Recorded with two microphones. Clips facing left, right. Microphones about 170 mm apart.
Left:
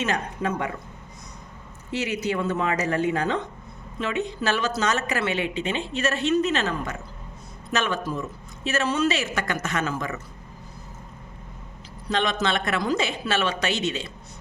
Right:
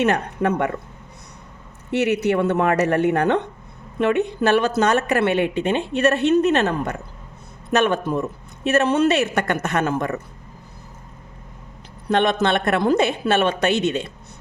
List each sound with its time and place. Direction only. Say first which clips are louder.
0.0 s speech: right 7 dB; 65° right (ahead or behind)
1.9 s speech: right 8 dB; 65° right (ahead or behind)
12.0 s speech: right 6 dB; 60° right (ahead or behind)